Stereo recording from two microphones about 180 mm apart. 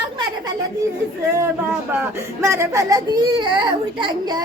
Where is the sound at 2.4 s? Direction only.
15° right (ahead or behind).